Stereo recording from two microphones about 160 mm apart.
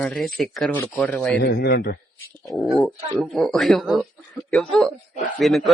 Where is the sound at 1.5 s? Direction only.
85° left.